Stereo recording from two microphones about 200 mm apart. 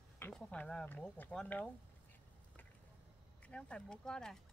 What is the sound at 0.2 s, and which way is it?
Speech, 5° left (ahead or behind).